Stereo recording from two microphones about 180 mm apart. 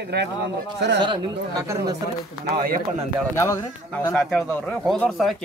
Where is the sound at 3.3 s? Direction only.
15° left (ahead or behind).